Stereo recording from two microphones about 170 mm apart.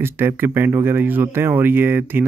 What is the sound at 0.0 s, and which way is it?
Speech, 15° right (ahead or behind).